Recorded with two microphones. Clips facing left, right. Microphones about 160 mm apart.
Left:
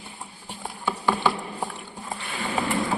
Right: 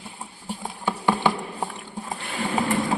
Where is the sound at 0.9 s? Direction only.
15° right (ahead or behind).